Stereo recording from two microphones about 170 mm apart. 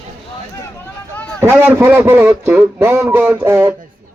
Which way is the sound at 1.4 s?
15° right (ahead or behind).